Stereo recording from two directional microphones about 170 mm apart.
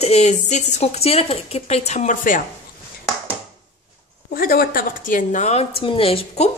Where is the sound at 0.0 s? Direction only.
40° left (ahead or behind).